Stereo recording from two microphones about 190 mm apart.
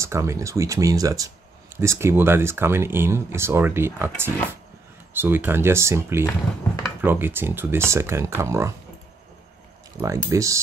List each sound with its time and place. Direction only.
0.0 s speech: 15° right (ahead or behind)
10.0 s speech: 15° right (ahead or behind)